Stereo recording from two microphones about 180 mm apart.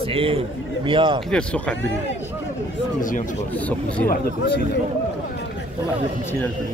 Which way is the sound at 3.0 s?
45° left (ahead or behind).